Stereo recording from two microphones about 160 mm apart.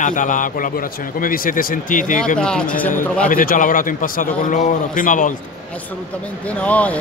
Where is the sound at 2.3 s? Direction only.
5° left (ahead or behind).